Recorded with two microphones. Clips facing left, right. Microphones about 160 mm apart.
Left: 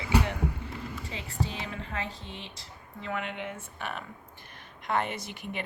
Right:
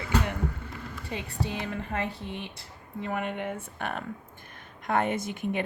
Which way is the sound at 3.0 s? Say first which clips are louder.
Right 3 dB; 50° right (ahead or behind).